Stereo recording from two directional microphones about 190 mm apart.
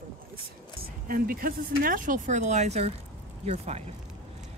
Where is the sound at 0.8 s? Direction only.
50° right (ahead or behind).